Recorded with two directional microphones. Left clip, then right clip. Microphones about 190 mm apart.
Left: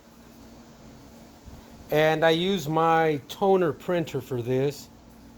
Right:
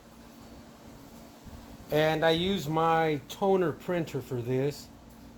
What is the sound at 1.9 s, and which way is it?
Speech, 50° left (ahead or behind).